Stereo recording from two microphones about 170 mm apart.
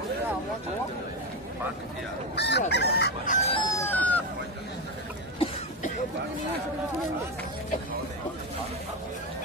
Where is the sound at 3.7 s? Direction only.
10° left (ahead or behind).